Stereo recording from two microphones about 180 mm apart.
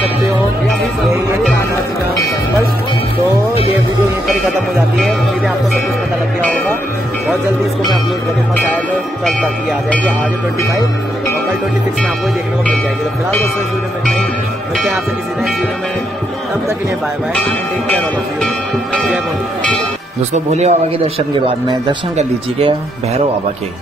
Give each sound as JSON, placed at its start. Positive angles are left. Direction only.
{"t": 6.4, "sound": "music", "side_deg": 5}
{"t": 9.2, "sound": "speech", "side_deg": 5}
{"t": 20.3, "sound": "speech", "side_deg": -40}
{"t": 22.1, "sound": "speech", "side_deg": -35}